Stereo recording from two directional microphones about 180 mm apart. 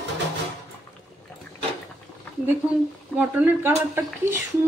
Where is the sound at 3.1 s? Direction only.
10° right (ahead or behind).